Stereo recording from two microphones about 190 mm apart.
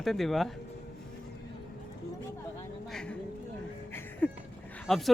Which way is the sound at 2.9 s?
5° left (ahead or behind).